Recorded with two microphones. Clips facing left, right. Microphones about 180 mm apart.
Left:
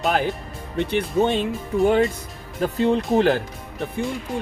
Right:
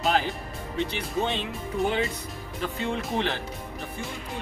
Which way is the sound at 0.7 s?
55° left (ahead or behind).